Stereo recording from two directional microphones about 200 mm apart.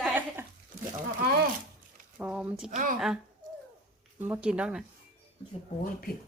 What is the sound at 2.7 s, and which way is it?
Speech, 40° right (ahead or behind).